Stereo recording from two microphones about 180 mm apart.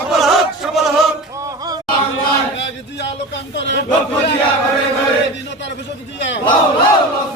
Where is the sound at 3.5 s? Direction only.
80° left.